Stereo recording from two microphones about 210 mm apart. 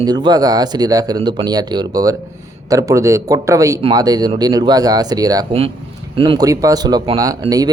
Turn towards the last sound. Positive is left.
turn(degrees=-15)  # may be behind; listen again after turning